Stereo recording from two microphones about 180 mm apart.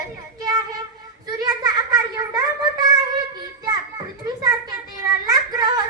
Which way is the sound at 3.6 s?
20° right (ahead or behind).